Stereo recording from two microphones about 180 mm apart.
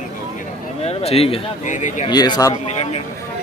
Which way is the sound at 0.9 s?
35° left (ahead or behind).